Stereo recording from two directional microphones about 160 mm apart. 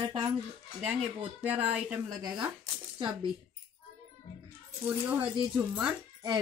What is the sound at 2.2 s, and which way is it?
Speech, 25° right (ahead or behind).